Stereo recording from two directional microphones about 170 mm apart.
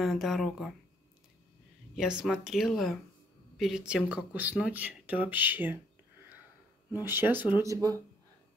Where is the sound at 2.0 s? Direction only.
5° right (ahead or behind).